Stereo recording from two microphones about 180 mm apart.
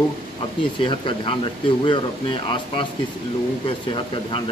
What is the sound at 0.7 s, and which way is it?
Speech, 30° left (ahead or behind).